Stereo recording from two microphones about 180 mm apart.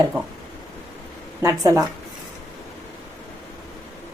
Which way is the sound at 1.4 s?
20° right (ahead or behind).